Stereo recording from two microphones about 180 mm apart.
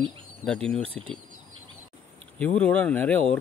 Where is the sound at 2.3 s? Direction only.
5° left (ahead or behind).